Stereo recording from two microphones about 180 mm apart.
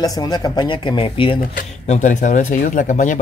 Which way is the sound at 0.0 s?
20° left (ahead or behind).